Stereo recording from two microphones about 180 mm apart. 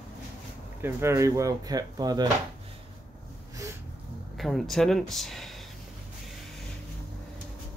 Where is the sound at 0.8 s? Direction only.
15° right (ahead or behind).